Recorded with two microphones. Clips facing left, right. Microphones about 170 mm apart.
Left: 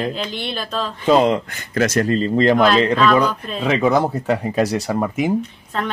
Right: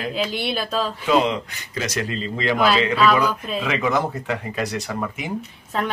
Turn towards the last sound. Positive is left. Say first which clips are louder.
# even
turn(degrees=-5)  # may be behind; listen again after turning